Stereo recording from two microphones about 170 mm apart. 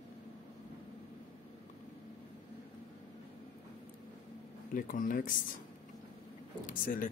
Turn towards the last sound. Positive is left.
turn(degrees=50)  # may be behind; listen again after turning